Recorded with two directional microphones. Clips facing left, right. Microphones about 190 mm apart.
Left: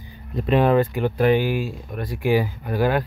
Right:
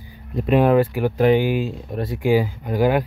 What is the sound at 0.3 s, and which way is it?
Speech, 5° right (ahead or behind).